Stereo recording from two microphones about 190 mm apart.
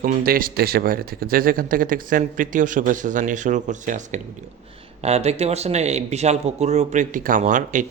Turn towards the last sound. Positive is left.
turn(degrees=-40)  # may be behind; listen again after turning